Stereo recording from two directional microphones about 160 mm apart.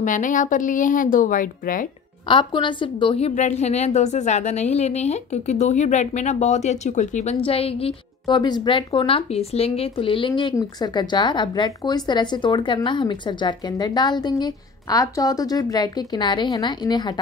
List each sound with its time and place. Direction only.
0.0 s a woman's voice: 55° left (ahead or behind)
2.2 s a woman's voice: 30° left (ahead or behind)